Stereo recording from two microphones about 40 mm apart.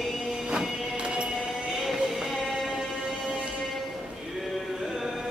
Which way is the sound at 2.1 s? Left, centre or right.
Centre.